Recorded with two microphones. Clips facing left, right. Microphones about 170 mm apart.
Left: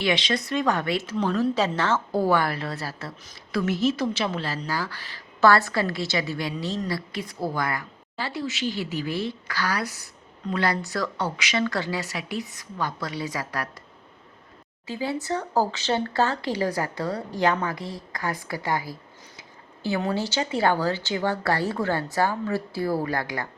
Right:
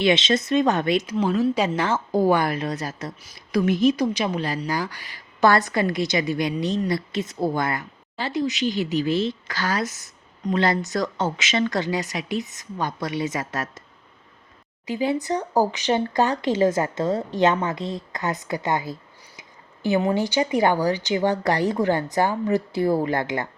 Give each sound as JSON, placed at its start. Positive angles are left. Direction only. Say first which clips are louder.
{"t": 0.0, "sound": "speech", "louder": "right 5 dB", "side_deg": -20}
{"t": 1.1, "sound": "speech", "louder": "left 1 dB", "side_deg": -10}
{"t": 14.8, "sound": "speech", "louder": "right 5 dB", "side_deg": -15}